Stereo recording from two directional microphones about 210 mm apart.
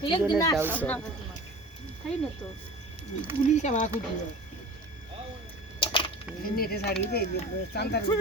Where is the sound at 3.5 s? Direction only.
35° left (ahead or behind).